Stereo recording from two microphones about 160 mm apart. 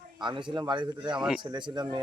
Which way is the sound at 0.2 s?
30° right (ahead or behind).